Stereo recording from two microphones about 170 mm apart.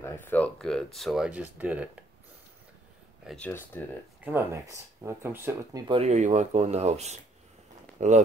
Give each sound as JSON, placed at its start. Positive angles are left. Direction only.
{"t": 0.0, "sound": "speech", "side_deg": 15}
{"t": 3.3, "sound": "speech", "side_deg": 10}
{"t": 4.2, "sound": "speech", "side_deg": -15}
{"t": 5.9, "sound": "speech", "side_deg": -40}